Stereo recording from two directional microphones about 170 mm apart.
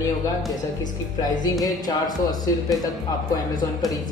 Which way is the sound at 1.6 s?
25° left (ahead or behind).